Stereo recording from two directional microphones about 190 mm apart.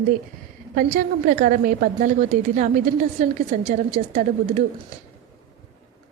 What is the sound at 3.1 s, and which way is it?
A woman's voice, 40° right (ahead or behind).